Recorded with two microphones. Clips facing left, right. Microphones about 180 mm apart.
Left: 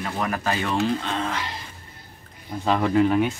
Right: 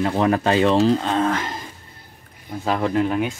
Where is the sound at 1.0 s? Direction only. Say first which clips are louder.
Right 7 dB; 45° right (ahead or behind).